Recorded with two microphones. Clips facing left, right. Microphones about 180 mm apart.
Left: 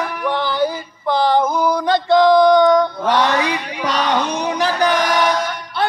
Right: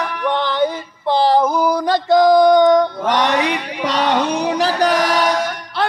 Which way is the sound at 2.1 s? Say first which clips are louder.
Right 1 dB; 40° right (ahead or behind).